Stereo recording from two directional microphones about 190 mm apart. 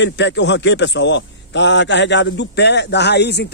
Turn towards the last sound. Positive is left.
turn(degrees=60)  # may be behind; listen again after turning